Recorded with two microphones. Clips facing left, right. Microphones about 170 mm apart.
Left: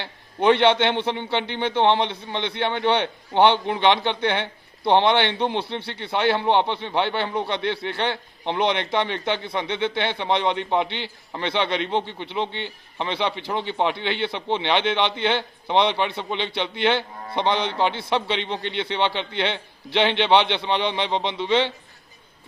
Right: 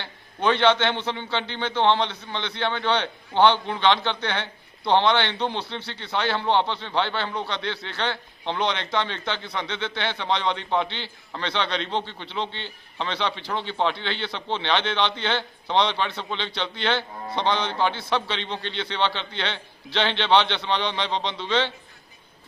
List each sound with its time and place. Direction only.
0.3 s a man's voice: 20° left (ahead or behind)